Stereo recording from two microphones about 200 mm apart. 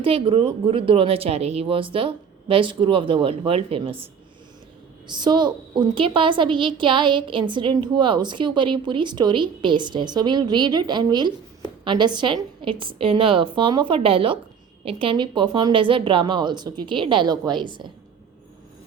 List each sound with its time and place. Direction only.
0.0 s a woman's voice: 25° right (ahead or behind)
5.0 s a woman's voice: 20° right (ahead or behind)